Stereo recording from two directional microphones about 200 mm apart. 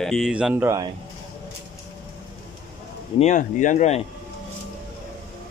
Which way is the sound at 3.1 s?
40° left (ahead or behind).